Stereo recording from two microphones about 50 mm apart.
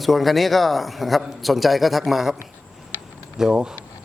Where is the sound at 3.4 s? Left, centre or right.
Centre.